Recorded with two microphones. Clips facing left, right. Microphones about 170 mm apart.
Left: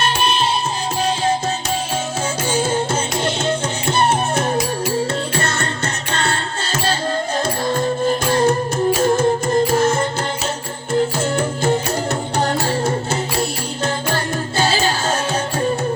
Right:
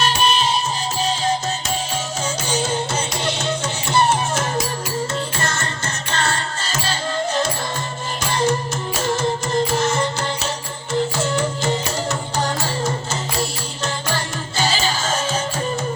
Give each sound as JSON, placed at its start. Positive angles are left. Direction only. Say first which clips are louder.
{"t": 0.0, "sound": "music", "louder": "even", "side_deg": 55}
{"t": 2.5, "sound": "music", "louder": "left 4 dB", "side_deg": 50}
{"t": 11.2, "sound": "music", "louder": "left 2 dB", "side_deg": 55}